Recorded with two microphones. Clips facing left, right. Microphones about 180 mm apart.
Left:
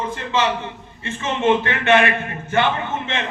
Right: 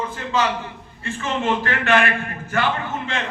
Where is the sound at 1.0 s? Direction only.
20° left (ahead or behind).